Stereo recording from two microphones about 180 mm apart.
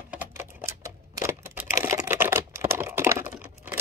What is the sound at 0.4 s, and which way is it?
Typing, 15° right (ahead or behind).